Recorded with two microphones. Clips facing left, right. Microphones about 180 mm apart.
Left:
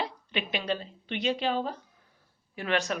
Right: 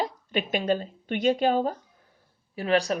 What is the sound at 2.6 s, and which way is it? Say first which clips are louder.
Speech: right 5 dB; 35° right (ahead or behind).